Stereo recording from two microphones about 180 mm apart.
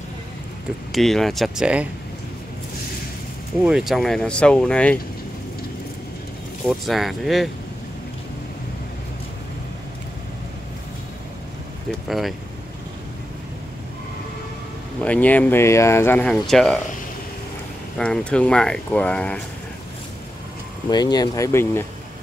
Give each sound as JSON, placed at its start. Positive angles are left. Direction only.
{"t": 0.9, "sound": "speech", "side_deg": 0}
{"t": 3.6, "sound": "speech", "side_deg": 0}
{"t": 6.9, "sound": "speech", "side_deg": 0}
{"t": 12.1, "sound": "speech", "side_deg": 0}
{"t": 15.0, "sound": "speech", "side_deg": 10}
{"t": 17.9, "sound": "speech", "side_deg": 5}
{"t": 20.9, "sound": "speech", "side_deg": 20}